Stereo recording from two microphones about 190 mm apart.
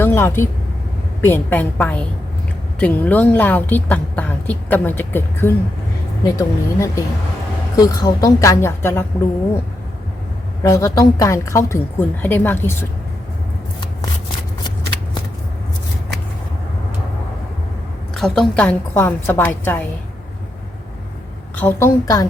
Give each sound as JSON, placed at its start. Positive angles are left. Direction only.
{"t": 0.0, "sound": "a woman's voice", "side_deg": 15}
{"t": 10.6, "sound": "a woman's voice", "side_deg": 15}
{"t": 18.1, "sound": "a woman's voice", "side_deg": 0}
{"t": 21.5, "sound": "a woman's voice", "side_deg": 10}